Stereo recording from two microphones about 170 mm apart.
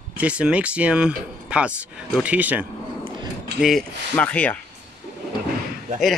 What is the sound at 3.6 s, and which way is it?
Speech, centre (ahead or behind).